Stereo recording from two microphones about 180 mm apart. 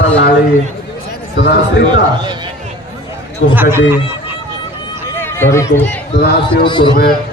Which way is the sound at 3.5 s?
10° right (ahead or behind).